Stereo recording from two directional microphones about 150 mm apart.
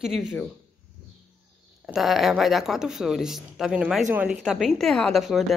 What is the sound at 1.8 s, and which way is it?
A woman's voice, centre (ahead or behind).